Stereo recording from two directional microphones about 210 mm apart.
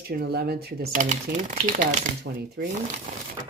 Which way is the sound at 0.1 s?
45° right (ahead or behind).